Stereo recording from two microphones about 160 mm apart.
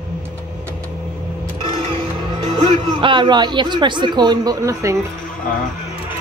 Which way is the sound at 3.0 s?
30° right (ahead or behind).